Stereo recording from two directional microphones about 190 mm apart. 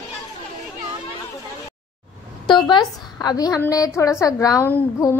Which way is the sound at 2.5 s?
25° left (ahead or behind).